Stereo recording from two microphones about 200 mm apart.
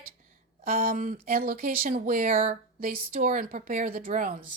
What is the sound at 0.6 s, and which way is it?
Speech, 45° right (ahead or behind).